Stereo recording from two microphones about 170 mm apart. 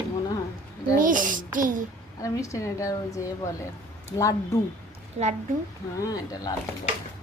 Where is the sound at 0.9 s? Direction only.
50° right (ahead or behind).